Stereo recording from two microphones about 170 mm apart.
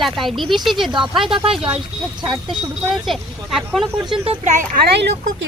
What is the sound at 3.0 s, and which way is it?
Speech, centre (ahead or behind).